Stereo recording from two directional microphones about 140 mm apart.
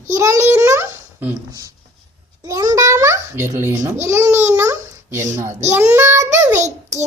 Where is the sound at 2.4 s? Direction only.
25° right (ahead or behind).